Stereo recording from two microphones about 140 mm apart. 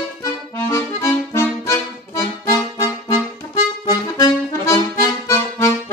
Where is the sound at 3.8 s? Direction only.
25° left (ahead or behind).